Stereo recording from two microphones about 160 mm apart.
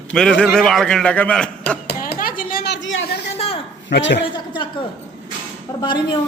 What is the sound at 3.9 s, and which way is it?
Speech, 90° left.